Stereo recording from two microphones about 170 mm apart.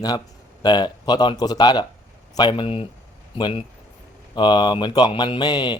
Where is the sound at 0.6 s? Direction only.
25° left (ahead or behind).